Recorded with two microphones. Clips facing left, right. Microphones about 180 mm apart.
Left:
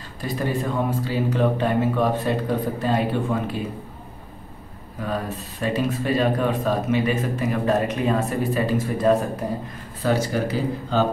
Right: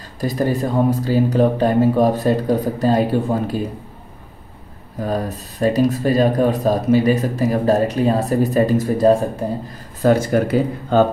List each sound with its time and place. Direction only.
0.2 s speech: 40° right (ahead or behind)
5.0 s speech: 40° right (ahead or behind)
10.0 s speech: 50° right (ahead or behind)